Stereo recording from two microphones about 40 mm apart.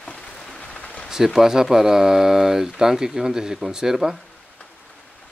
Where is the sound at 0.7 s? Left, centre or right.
Left.